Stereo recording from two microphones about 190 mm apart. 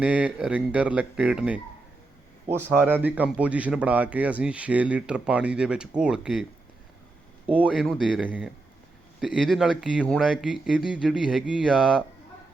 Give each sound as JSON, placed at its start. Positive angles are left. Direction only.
{"t": 0.0, "sound": "speech", "side_deg": -5}
{"t": 7.5, "sound": "speech", "side_deg": -5}